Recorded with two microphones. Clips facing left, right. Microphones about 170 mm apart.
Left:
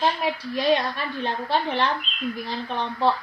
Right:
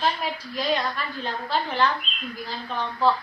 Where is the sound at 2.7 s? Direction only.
25° left (ahead or behind).